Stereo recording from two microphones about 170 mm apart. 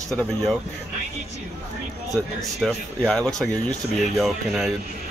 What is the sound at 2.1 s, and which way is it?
A man's voice, centre (ahead or behind).